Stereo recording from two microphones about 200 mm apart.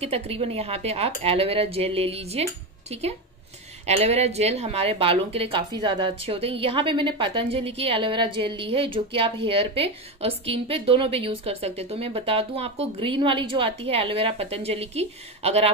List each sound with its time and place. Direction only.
0.0 s a woman's voice: 30° right (ahead or behind)